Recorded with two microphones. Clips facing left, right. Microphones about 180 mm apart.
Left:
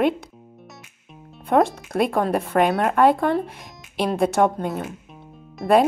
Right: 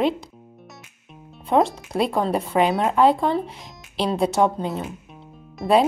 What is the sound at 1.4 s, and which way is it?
A woman's voice, 55° left (ahead or behind).